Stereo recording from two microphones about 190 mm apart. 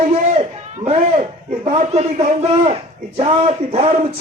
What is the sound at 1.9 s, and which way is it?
A man's voice, 35° right (ahead or behind).